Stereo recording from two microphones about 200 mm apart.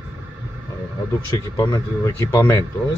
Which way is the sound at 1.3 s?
20° left (ahead or behind).